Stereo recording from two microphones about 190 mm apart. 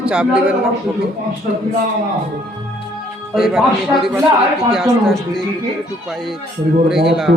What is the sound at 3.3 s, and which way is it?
A man's voice, centre (ahead or behind).